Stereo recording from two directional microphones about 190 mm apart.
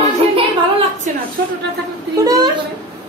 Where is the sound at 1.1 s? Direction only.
40° right (ahead or behind).